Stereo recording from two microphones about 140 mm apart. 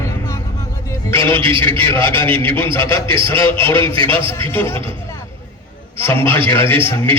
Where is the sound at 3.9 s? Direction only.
40° right (ahead or behind).